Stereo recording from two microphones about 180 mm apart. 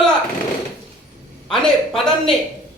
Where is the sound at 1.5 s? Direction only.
5° left (ahead or behind).